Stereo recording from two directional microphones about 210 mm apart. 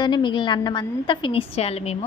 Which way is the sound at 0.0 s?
20° left (ahead or behind).